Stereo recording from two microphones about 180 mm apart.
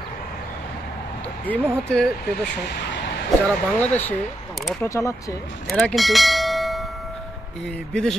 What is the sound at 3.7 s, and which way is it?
Speech, 10° left (ahead or behind).